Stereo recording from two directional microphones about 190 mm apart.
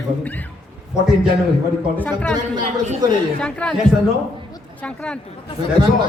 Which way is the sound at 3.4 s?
5° left (ahead or behind).